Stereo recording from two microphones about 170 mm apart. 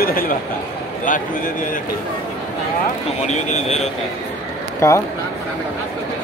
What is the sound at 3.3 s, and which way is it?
Speech, 40° left (ahead or behind).